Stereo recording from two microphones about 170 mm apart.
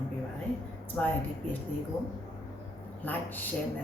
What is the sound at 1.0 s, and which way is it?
Speech, 5° left (ahead or behind).